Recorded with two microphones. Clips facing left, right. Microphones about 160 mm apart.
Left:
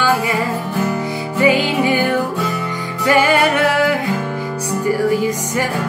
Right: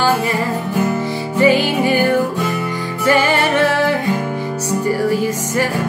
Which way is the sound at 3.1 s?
15° left (ahead or behind).